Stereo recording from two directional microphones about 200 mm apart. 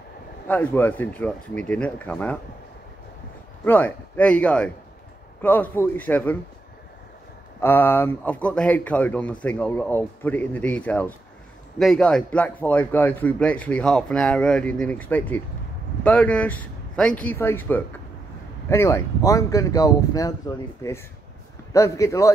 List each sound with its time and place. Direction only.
0.5 s speech: 10° left (ahead or behind)
3.6 s speech: 10° left (ahead or behind)
7.6 s speech: 10° left (ahead or behind)